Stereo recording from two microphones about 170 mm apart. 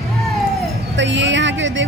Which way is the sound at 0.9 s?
90° right.